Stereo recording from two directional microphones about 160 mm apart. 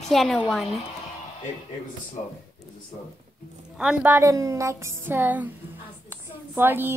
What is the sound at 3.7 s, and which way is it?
A woman's voice, 5° right (ahead or behind).